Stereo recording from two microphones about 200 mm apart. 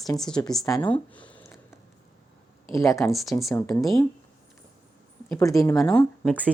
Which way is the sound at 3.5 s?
15° left (ahead or behind).